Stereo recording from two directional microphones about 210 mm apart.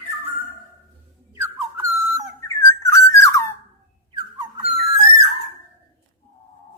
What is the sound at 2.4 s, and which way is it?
Whistle, 15° left (ahead or behind).